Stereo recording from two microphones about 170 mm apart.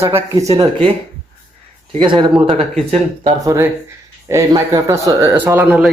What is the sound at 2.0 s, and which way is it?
Speech, 25° right (ahead or behind).